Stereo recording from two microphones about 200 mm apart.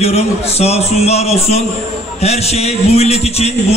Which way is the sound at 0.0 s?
30° left (ahead or behind).